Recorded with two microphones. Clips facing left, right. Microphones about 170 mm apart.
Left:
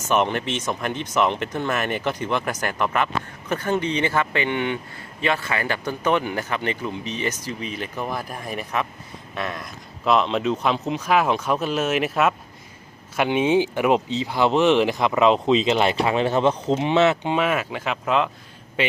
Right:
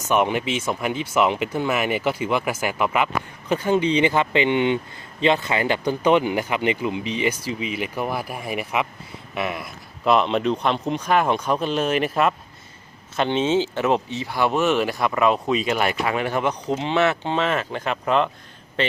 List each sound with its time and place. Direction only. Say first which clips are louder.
0.1 s a man's voice: right 1 dB; 10° right (ahead or behind); by 18.9 s 10° left (ahead or behind)